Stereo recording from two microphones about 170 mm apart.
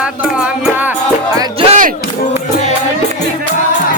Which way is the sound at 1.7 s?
50° right (ahead or behind).